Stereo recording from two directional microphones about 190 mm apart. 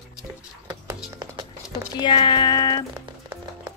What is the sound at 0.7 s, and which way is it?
Music, 15° right (ahead or behind).